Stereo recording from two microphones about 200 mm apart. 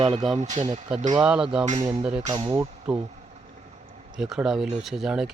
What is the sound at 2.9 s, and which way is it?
Speech, 5° right (ahead or behind).